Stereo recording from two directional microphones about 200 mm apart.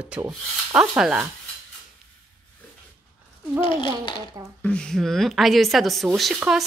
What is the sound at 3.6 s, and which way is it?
Speech, 25° left (ahead or behind).